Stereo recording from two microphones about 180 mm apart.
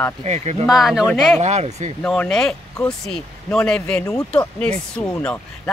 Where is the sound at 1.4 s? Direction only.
40° right (ahead or behind).